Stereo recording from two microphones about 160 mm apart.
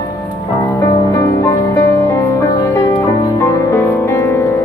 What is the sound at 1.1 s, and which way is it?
Music, 20° left (ahead or behind).